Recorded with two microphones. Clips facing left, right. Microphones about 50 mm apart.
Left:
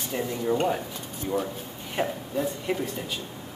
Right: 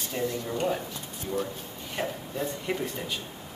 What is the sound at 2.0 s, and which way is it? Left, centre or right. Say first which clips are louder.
Speech: left 4 dB; centre.